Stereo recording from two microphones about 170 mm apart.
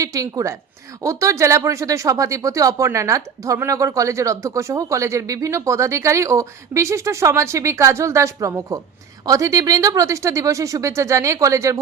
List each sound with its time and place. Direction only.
0.0 s speech: 20° right (ahead or behind)